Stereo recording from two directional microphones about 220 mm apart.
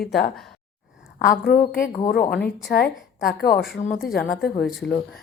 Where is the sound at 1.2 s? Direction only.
40° left (ahead or behind).